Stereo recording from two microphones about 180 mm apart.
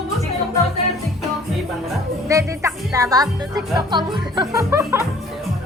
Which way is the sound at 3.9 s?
25° right (ahead or behind).